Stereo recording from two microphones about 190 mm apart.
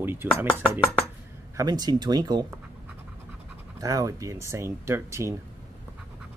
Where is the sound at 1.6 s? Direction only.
20° right (ahead or behind).